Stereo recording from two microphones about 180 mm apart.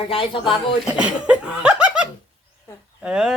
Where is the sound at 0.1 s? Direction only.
30° left (ahead or behind).